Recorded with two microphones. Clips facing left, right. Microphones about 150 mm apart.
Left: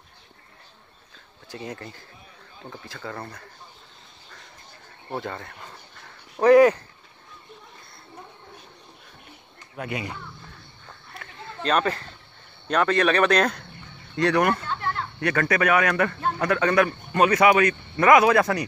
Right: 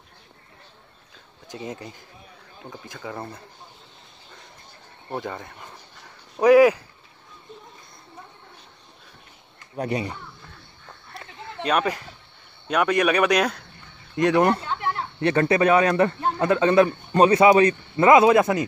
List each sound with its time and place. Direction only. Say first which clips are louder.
1.5 s speech: right 1 dB; 20° right (ahead or behind)
5.2 s speech: right 1 dB; 15° right (ahead or behind)
9.8 s speech: right 5 dB; 35° right (ahead or behind)
11.6 s speech: even; 10° right (ahead or behind)
14.1 s speech: right 2 dB; 20° right (ahead or behind)
14.7 s a sound: right 2 dB; 15° right (ahead or behind)
15.1 s speech: right 4 dB; 25° right (ahead or behind)